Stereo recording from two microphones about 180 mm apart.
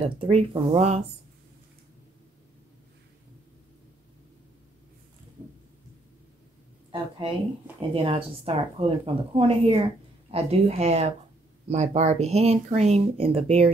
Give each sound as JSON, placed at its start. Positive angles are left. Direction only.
{"t": 0.0, "sound": "speech", "side_deg": -30}
{"t": 6.9, "sound": "speech", "side_deg": -30}